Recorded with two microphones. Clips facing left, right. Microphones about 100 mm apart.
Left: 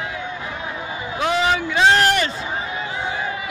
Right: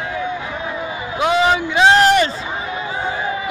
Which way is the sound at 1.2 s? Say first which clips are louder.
Right 4 dB; 20° right (ahead or behind).